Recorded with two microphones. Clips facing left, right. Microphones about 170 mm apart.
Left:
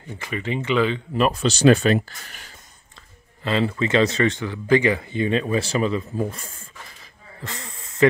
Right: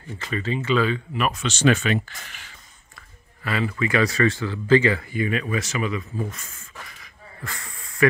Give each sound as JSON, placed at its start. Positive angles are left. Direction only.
{"t": 0.2, "sound": "speech", "side_deg": 15}
{"t": 3.4, "sound": "speech", "side_deg": 25}